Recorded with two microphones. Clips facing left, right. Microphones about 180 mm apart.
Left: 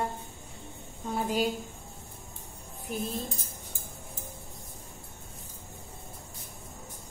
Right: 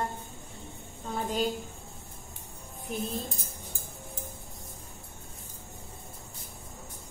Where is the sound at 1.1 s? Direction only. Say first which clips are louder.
Left 1 dB; 10° left (ahead or behind).